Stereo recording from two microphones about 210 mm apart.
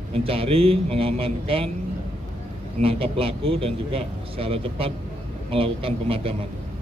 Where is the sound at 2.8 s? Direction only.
25° right (ahead or behind).